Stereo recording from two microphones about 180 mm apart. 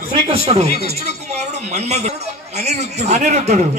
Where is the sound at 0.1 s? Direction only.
35° right (ahead or behind).